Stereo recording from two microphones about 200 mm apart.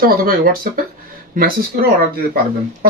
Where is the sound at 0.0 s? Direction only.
45° right (ahead or behind).